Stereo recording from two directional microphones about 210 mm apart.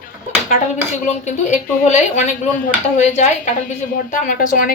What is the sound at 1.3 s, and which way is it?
A woman's voice, 35° left (ahead or behind).